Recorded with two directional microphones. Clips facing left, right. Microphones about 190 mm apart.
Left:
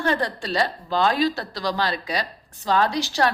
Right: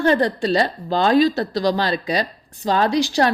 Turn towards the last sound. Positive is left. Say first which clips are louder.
# right 4 dB
turn(degrees=-15)  # may be behind; listen again after turning